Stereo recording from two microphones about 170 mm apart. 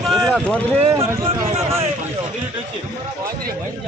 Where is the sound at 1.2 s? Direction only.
35° right (ahead or behind).